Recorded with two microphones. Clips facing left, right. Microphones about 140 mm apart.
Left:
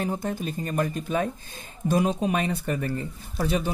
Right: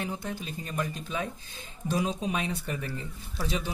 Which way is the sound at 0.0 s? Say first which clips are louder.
Left 6 dB; 45° left (ahead or behind).